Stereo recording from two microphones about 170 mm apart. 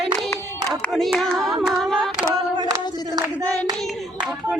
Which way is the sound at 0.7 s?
Centre (ahead or behind).